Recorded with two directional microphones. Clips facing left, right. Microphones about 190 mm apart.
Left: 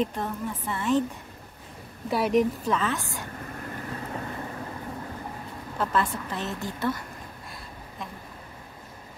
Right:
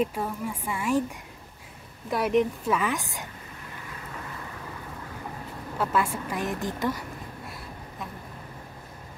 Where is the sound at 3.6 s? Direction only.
50° left (ahead or behind).